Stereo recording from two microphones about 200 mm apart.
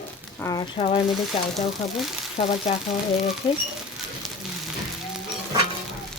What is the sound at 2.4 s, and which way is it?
Speech, 40° left (ahead or behind).